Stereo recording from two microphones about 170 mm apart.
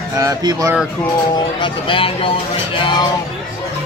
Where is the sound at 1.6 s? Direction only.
30° left (ahead or behind).